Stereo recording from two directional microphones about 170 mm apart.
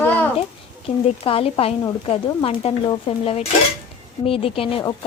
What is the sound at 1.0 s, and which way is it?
Speech, 35° left (ahead or behind).